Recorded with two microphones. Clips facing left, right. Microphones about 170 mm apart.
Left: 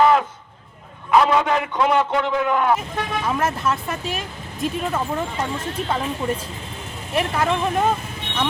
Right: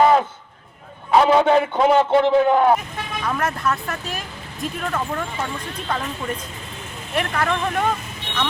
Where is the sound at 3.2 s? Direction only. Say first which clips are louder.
Even; 25° left (ahead or behind).